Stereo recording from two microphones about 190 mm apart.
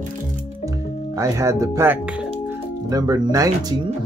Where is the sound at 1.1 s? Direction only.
15° right (ahead or behind).